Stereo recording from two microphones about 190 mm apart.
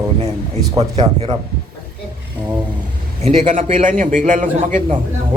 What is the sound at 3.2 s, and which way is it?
A man's voice, 35° right (ahead or behind).